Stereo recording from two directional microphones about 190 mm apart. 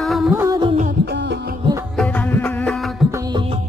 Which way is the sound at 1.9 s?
5° left (ahead or behind).